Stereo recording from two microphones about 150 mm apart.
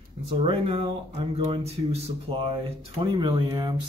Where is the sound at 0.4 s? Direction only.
40° right (ahead or behind).